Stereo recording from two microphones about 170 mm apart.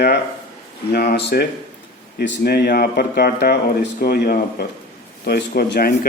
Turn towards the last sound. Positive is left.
turn(degrees=75)  # may be behind; listen again after turning